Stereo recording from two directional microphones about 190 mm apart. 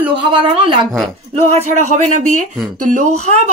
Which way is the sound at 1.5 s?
40° right (ahead or behind).